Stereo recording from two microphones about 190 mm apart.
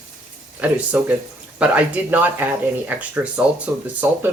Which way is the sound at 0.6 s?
10° right (ahead or behind).